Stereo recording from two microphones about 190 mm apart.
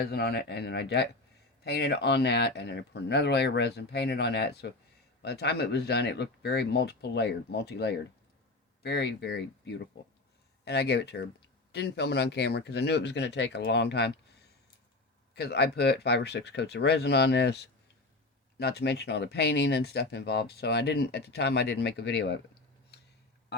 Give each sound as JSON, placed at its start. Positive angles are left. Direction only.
{"t": 0.0, "sound": "speech", "side_deg": 55}
{"t": 15.4, "sound": "speech", "side_deg": 60}